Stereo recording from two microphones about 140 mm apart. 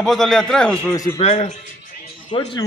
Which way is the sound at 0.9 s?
25° left (ahead or behind).